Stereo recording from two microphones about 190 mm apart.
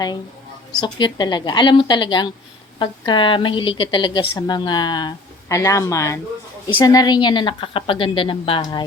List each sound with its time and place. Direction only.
0.8 s a woman's voice: 25° left (ahead or behind)